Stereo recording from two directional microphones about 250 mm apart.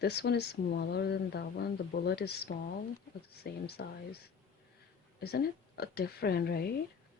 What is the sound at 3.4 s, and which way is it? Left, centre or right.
Speech, left.